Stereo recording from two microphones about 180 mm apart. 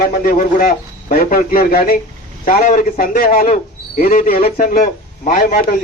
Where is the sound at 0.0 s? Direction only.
55° left (ahead or behind).